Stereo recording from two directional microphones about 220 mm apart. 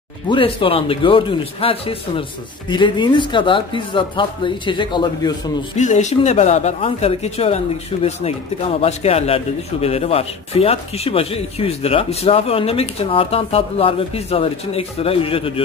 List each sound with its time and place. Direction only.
0.3 s speech: 25° left (ahead or behind)
5.8 s speech: 35° left (ahead or behind)